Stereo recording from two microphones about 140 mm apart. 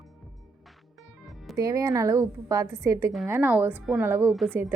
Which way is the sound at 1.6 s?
25° right (ahead or behind).